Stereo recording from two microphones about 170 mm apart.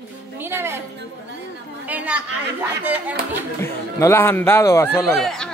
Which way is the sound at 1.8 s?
10° right (ahead or behind).